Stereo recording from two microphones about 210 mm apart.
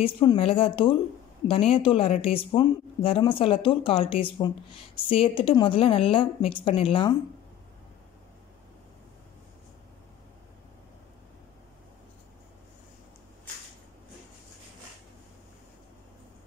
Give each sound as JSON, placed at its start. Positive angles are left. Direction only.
{"t": 0.0, "sound": "speech", "side_deg": 25}